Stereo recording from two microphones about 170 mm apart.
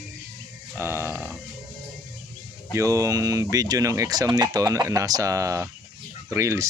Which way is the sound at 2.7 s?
20° right (ahead or behind).